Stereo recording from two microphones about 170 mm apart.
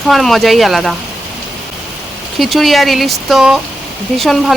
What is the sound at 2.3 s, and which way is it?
Speech, centre (ahead or behind).